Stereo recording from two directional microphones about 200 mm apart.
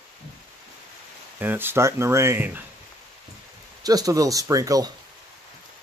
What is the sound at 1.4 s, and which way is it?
Speech, 10° right (ahead or behind).